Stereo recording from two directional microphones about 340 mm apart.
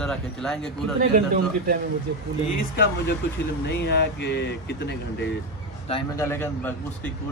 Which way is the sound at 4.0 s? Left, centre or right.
Left.